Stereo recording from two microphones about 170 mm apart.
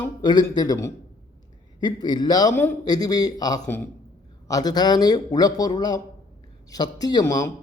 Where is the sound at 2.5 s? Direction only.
10° left (ahead or behind).